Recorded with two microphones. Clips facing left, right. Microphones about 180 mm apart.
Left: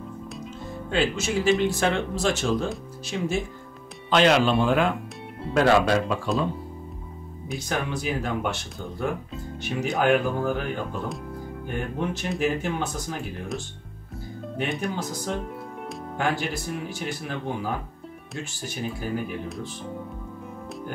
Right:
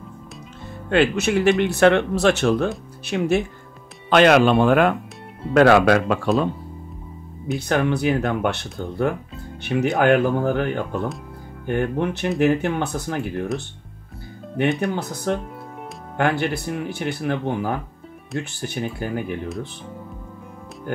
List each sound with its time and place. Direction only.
0.8 s speech: 65° right (ahead or behind)
5.5 s speech: 75° right (ahead or behind)
7.5 s speech: 60° right (ahead or behind)
14.8 s speech: 60° right (ahead or behind)